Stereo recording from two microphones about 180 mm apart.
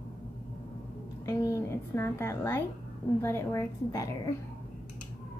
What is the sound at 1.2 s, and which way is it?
A woman's voice, 15° left (ahead or behind).